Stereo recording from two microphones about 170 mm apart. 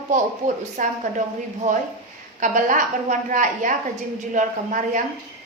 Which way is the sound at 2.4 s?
50° right (ahead or behind).